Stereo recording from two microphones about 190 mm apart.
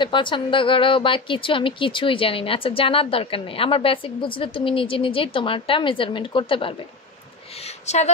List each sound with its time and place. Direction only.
0.0 s a woman's voice: 25° left (ahead or behind)
7.8 s speech: 35° left (ahead or behind)